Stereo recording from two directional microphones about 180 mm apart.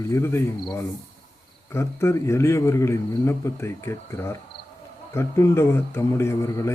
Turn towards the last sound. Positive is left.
turn(degrees=15)  # may be behind; listen again after turning